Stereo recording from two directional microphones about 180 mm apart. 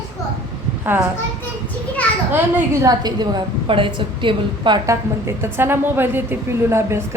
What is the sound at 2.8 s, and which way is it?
A woman's voice, 20° right (ahead or behind).